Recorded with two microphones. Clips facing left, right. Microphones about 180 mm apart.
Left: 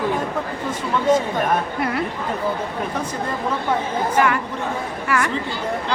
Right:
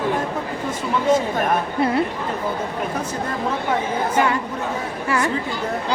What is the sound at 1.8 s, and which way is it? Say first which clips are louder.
Speech: right 4 dB; 25° right (ahead or behind).